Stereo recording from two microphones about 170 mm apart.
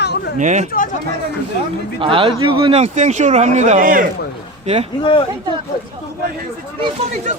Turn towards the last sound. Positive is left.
turn(degrees=-35)  # may be behind; listen again after turning